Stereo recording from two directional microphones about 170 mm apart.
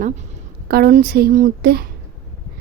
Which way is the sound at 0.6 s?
65° right (ahead or behind).